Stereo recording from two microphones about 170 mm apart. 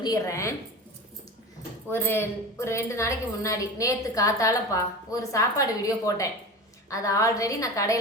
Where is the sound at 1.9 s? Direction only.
15° left (ahead or behind).